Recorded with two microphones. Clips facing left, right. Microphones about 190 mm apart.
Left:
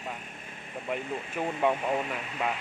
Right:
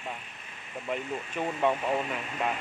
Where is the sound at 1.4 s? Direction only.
10° left (ahead or behind).